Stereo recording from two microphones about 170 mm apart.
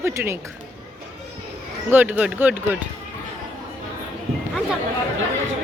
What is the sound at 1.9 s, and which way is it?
Speech, 10° right (ahead or behind).